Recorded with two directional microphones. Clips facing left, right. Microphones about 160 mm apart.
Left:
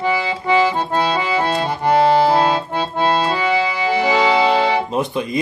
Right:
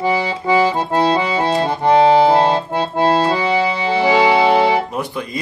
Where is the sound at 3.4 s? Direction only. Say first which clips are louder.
Right 1 dB; 30° right (ahead or behind).